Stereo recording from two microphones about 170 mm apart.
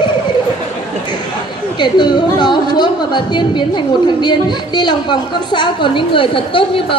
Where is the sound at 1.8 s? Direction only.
25° left (ahead or behind).